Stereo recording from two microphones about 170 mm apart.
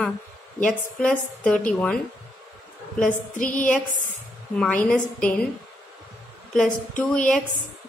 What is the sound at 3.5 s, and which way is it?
Speech, 10° left (ahead or behind).